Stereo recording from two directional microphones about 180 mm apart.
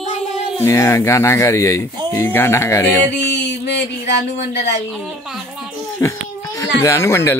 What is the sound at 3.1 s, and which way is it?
Speech, 75° left (ahead or behind).